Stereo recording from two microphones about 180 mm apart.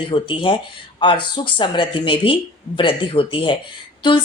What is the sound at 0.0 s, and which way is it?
Speech, 30° left (ahead or behind).